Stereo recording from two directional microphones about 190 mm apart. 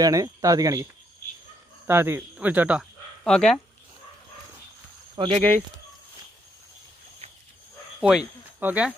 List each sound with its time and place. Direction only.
0.0 s speech: 15° right (ahead or behind)
1.9 s speech: 10° right (ahead or behind)
5.1 s speech: 25° right (ahead or behind)
8.0 s speech: 5° right (ahead or behind)